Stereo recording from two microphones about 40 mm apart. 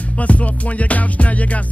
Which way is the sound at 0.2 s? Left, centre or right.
Left.